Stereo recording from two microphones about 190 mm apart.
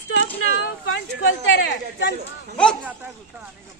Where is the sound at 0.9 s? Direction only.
90° left; by 2.2 s 60° left (ahead or behind).